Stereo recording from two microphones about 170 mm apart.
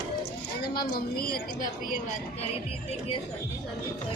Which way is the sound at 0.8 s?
60° left (ahead or behind).